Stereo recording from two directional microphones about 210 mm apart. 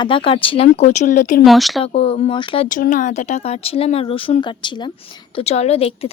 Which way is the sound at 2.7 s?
40° left (ahead or behind).